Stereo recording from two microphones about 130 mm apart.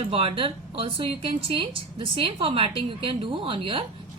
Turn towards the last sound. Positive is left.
turn(degrees=-45)  # may be behind; listen again after turning